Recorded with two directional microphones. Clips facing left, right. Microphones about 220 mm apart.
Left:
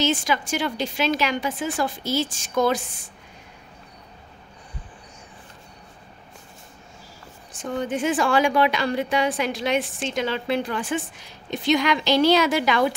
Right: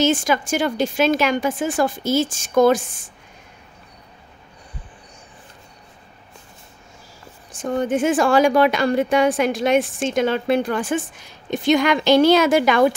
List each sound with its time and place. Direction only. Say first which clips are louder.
0.0 s a woman's voice: right 5 dB; 45° right (ahead or behind)
7.6 s a woman's voice: right 5 dB; 45° right (ahead or behind)